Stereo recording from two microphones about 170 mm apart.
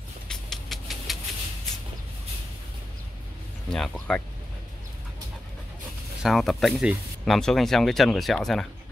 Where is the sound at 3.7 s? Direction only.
5° left (ahead or behind).